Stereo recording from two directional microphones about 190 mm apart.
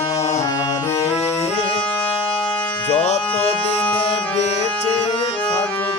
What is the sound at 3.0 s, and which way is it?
Music, 35° left (ahead or behind).